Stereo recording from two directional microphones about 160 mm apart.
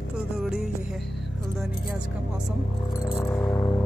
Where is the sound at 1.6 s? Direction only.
5° right (ahead or behind).